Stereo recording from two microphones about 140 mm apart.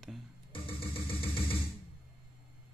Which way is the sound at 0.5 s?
40° left (ahead or behind).